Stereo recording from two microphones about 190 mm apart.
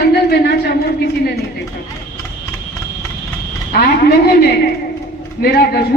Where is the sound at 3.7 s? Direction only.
55° left (ahead or behind).